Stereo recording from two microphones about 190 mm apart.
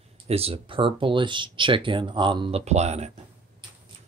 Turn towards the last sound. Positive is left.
turn(degrees=-35)  # may be behind; listen again after turning